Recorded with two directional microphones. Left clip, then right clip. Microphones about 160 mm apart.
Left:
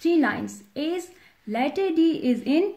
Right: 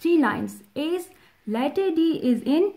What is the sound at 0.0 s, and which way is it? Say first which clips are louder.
A woman's voice: right 1 dB; 75° right (ahead or behind).